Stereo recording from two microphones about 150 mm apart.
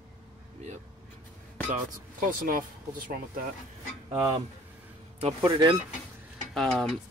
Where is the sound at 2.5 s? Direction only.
70° right (ahead or behind).